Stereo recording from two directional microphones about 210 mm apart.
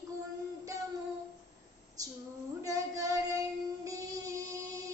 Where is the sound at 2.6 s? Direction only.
15° right (ahead or behind).